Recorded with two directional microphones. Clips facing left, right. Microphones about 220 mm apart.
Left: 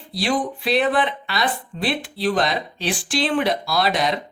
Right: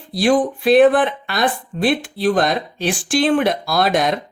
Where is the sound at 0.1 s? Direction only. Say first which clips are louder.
Right 7 dB; 50° right (ahead or behind).